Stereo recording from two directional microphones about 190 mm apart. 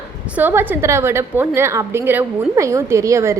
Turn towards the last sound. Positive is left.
turn(degrees=-15)  # may be behind; listen again after turning